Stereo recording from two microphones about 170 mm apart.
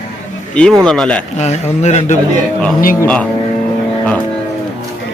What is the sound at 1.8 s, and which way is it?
Speech, 40° left (ahead or behind).